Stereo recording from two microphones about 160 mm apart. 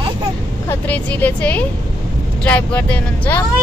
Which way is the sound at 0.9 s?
10° left (ahead or behind).